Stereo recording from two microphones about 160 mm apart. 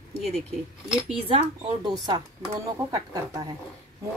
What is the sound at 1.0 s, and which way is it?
Speech, 40° right (ahead or behind).